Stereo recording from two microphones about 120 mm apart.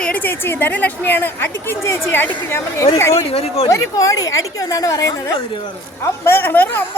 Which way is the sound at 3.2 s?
55° left (ahead or behind).